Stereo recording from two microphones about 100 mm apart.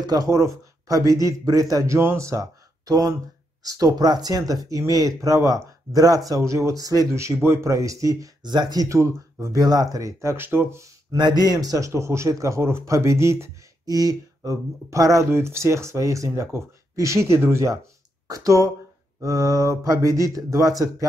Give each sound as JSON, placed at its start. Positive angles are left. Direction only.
{"t": 0.0, "sound": "speech", "side_deg": -40}
{"t": 8.8, "sound": "speech", "side_deg": -30}
{"t": 11.1, "sound": "speech", "side_deg": -45}